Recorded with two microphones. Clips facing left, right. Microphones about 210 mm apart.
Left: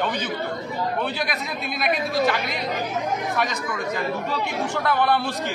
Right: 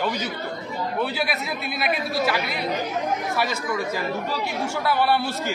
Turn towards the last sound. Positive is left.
turn(degrees=-10)  # may be behind; listen again after turning